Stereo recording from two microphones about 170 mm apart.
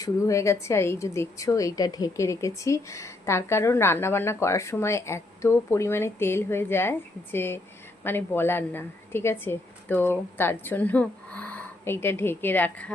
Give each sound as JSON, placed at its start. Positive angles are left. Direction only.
{"t": 0.0, "sound": "a woman's voice", "side_deg": 20}